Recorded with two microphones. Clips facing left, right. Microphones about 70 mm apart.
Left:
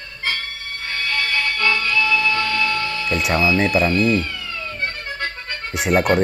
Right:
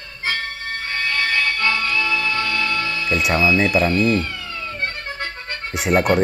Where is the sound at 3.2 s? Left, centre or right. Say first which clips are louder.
Even; centre.